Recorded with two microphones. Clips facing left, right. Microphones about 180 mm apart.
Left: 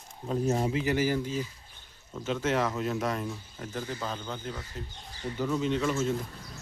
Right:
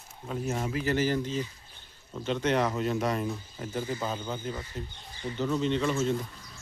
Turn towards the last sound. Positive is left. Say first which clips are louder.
# right 1 dB
turn(degrees=0)  # may be behind; listen again after turning